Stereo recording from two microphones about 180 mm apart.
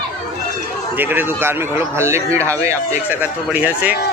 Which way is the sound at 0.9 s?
10° right (ahead or behind).